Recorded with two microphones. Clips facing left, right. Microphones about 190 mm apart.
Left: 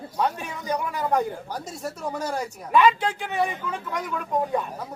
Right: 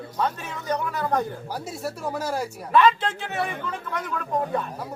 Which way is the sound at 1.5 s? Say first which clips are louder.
Right 1 dB; 5° right (ahead or behind).